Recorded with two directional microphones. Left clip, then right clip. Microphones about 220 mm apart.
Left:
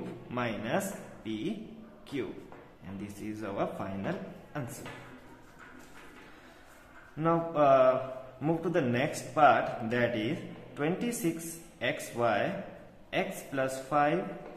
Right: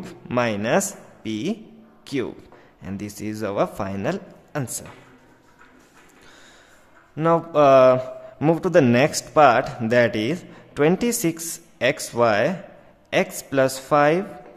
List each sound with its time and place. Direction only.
0.3 s speech: 50° right (ahead or behind)
2.8 s a man's voice: 50° right (ahead or behind)
7.2 s a man's voice: 55° right (ahead or behind)